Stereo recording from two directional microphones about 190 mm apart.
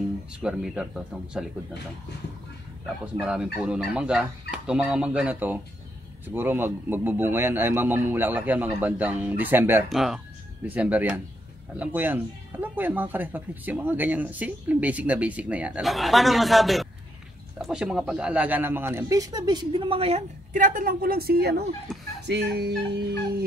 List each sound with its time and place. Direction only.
0.4 s speech: 5° right (ahead or behind)
3.2 s speech: 5° right (ahead or behind)
9.8 s speech: centre (ahead or behind); by 21.6 s 55° right (ahead or behind)
21.9 s a sound: centre (ahead or behind)
22.2 s music: 60° right (ahead or behind)